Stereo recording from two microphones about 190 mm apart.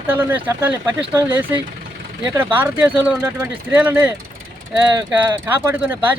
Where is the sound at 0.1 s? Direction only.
10° right (ahead or behind).